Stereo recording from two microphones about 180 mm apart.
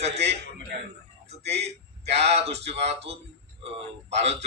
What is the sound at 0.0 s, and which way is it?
Speech, 35° right (ahead or behind).